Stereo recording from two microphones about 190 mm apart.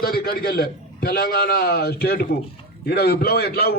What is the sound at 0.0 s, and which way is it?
A man's voice, 55° left (ahead or behind).